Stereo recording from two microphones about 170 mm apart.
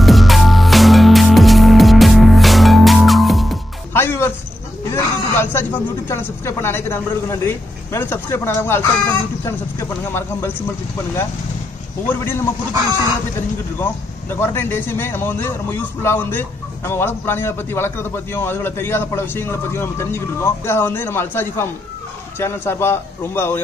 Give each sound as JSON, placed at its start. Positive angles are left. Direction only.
{"t": 0.0, "sound": "music", "side_deg": 0}
{"t": 3.9, "sound": "music", "side_deg": 15}
{"t": 4.9, "sound": "a man's voice", "side_deg": 15}
{"t": 12.1, "sound": "a man's voice", "side_deg": 15}
{"t": 14.3, "sound": "a man's voice", "side_deg": 15}